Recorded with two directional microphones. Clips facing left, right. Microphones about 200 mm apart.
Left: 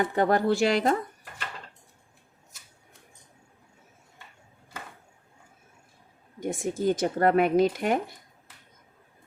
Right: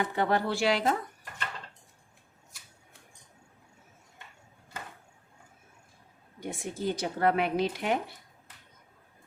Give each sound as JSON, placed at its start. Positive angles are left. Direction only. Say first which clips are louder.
{"t": 0.0, "sound": "speech", "louder": "left 5 dB", "side_deg": 45}
{"t": 6.4, "sound": "speech", "louder": "left 6 dB", "side_deg": 45}